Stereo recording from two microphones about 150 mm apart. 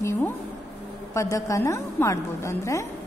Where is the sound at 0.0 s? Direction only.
15° left (ahead or behind).